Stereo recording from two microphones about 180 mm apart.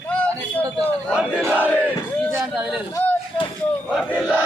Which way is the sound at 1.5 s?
10° left (ahead or behind).